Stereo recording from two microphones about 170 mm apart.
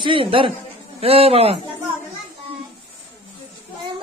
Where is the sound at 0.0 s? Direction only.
30° right (ahead or behind).